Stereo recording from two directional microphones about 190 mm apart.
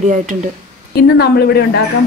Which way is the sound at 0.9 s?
55° left (ahead or behind).